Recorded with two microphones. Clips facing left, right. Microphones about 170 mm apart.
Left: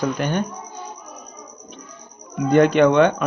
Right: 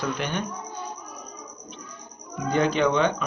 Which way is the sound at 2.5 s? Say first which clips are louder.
Left 8 dB; 60° left (ahead or behind).